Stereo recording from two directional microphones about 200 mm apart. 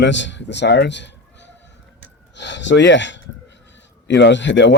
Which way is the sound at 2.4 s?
65° left (ahead or behind).